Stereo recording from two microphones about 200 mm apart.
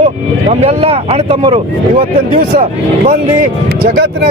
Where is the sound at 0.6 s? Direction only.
30° right (ahead or behind).